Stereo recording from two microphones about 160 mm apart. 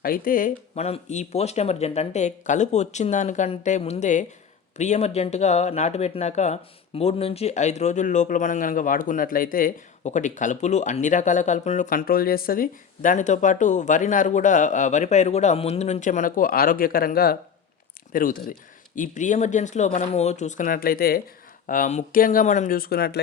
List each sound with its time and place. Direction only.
0.0 s speech: 65° left (ahead or behind)
0.8 s speech: 40° left (ahead or behind)
11.9 s speech: 65° left (ahead or behind)
21.7 s speech: 50° left (ahead or behind); by 23.2 s 80° left